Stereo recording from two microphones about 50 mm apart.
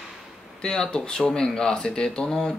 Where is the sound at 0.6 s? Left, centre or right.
Centre.